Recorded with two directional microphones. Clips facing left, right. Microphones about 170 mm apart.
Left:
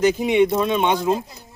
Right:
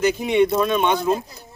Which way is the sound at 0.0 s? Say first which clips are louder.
Left 1 dB; 15° left (ahead or behind).